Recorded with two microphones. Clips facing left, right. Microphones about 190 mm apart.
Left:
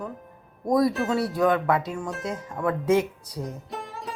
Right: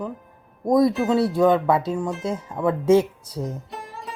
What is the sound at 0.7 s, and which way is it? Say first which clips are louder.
Speech: right 4 dB; 20° right (ahead or behind).